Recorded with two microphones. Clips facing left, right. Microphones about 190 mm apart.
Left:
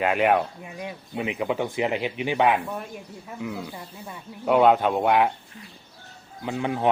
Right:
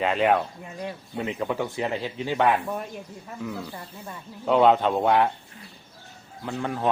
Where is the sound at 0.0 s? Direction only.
10° left (ahead or behind).